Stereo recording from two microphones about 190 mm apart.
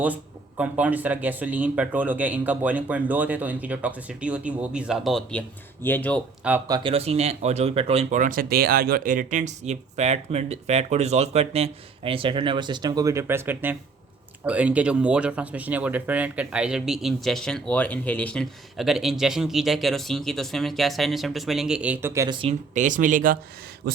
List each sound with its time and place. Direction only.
0.0 s speech: 10° right (ahead or behind); by 6.2 s 10° left (ahead or behind)
6.7 s speech: 25° right (ahead or behind)
22.4 s speech: 35° right (ahead or behind)
23.9 s a sound: 55° right (ahead or behind)